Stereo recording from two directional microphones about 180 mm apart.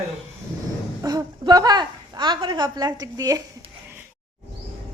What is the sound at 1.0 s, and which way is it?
A woman's voice, 25° right (ahead or behind).